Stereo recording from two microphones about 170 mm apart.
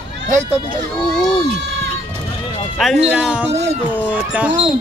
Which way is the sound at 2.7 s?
Centre (ahead or behind).